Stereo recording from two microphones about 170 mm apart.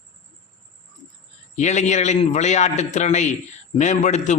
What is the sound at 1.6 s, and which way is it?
A man's voice, 45° left (ahead or behind).